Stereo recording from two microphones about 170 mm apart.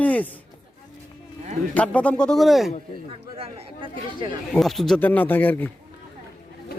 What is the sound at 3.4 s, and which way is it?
Speech, 30° right (ahead or behind).